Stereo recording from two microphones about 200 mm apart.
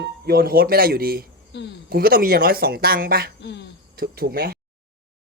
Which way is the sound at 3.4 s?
60° left (ahead or behind).